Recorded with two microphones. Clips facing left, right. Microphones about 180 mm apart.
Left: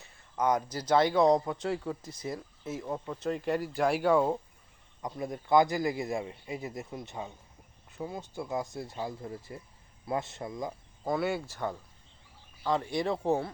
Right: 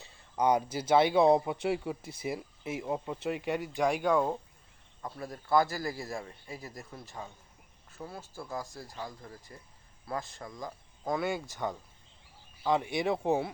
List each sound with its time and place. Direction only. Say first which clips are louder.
0.3 s a man's voice: right 1 dB; 10° right (ahead or behind); by 10.8 s 25° left (ahead or behind)
11.0 s speech: left 2 dB; 5° left (ahead or behind)
11.4 s speech: even; 15° right (ahead or behind)